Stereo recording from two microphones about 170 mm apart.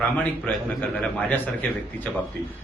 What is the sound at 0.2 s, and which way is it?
A man's voice, 10° left (ahead or behind).